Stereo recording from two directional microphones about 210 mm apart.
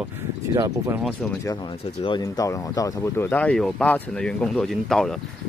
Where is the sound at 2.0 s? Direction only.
20° left (ahead or behind).